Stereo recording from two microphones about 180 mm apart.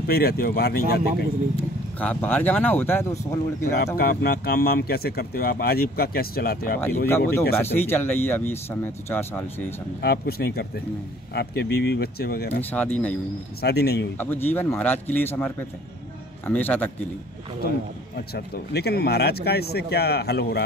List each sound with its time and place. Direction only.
0.0 s speech: 60° left (ahead or behind)
1.6 s speech: 10° left (ahead or behind)
3.7 s speech: 60° left (ahead or behind)
7.1 s speech: 15° left (ahead or behind)
10.0 s speech: 60° left (ahead or behind)
12.6 s speech: 10° left (ahead or behind)
13.6 s speech: 65° left (ahead or behind)
14.1 s speech: 10° left (ahead or behind)
18.1 s speech: 65° left (ahead or behind)